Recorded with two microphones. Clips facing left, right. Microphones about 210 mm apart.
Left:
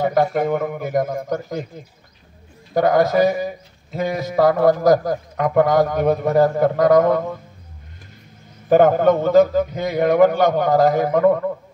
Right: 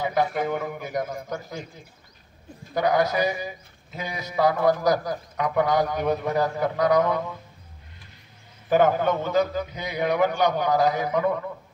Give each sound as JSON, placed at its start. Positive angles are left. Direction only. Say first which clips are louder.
{"t": 0.0, "sound": "a man's voice", "louder": "left 6 dB", "side_deg": 50}
{"t": 2.7, "sound": "a man's voice", "louder": "left 6 dB", "side_deg": 45}
{"t": 8.6, "sound": "a man's voice", "louder": "left 7 dB", "side_deg": 50}